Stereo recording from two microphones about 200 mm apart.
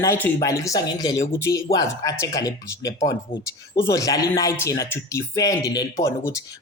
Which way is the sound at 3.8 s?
15° left (ahead or behind).